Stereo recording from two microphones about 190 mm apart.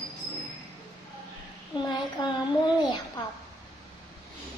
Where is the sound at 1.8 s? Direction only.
25° left (ahead or behind).